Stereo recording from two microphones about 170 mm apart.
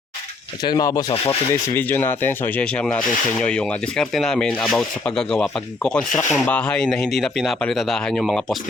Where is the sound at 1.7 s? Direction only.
10° left (ahead or behind).